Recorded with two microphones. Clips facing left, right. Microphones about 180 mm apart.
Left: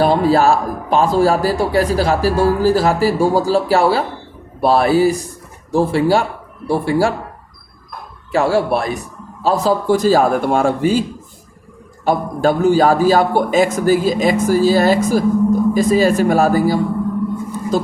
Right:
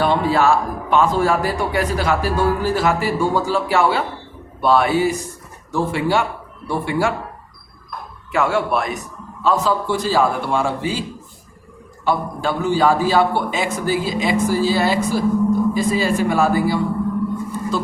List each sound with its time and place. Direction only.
0.0 s speech: 35° left (ahead or behind)
8.3 s a man's voice: 35° left (ahead or behind)
12.0 s a man's voice: 45° left (ahead or behind)